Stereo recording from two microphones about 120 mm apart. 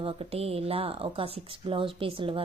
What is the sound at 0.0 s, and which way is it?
A woman's voice, 50° right (ahead or behind).